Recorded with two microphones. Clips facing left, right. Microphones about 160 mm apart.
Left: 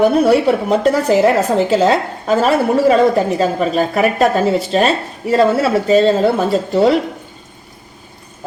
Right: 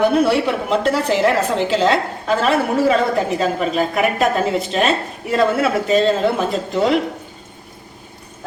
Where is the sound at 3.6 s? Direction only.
35° left (ahead or behind).